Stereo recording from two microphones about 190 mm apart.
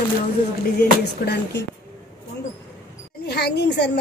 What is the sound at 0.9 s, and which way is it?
Speech, 60° left (ahead or behind).